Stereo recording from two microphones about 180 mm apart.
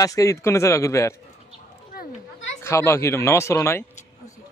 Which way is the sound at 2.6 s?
15° left (ahead or behind).